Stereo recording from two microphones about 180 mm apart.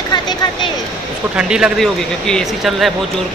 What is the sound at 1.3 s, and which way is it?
A man's voice, 5° right (ahead or behind).